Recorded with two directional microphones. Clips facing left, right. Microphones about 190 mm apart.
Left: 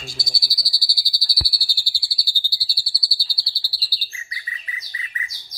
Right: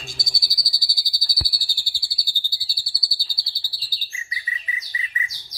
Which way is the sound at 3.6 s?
50° right (ahead or behind).